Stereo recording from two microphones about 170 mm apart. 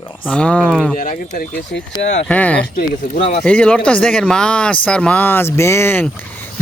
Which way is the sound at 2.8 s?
55° left (ahead or behind).